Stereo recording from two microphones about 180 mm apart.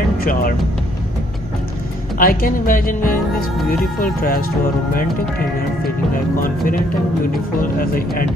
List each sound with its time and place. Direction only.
0.2 s speech: 55° left (ahead or behind)
2.1 s speech: 50° left (ahead or behind)
7.8 s speech: 55° left (ahead or behind)